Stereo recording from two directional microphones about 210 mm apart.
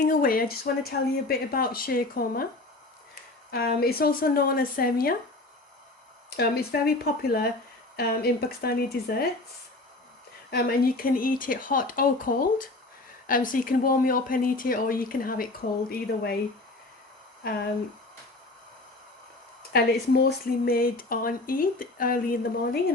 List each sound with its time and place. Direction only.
0.0 s speech: 45° left (ahead or behind)
3.5 s speech: 45° left (ahead or behind)
6.3 s speech: 50° left (ahead or behind)
10.5 s speech: 45° left (ahead or behind)
19.7 s speech: 45° left (ahead or behind)